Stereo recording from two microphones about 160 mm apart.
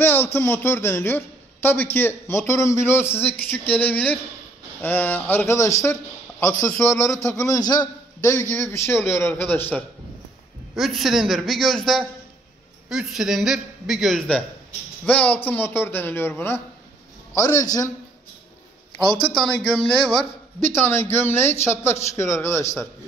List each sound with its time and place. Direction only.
0.0 s speech: 15° left (ahead or behind)
10.8 s a man's voice: centre (ahead or behind); by 17.8 s 20° left (ahead or behind)
19.3 s a man's voice: 5° left (ahead or behind)
20.8 s speech: 15° left (ahead or behind)